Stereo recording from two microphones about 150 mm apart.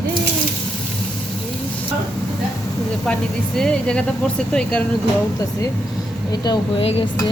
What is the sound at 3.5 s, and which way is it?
Speech, 5° left (ahead or behind).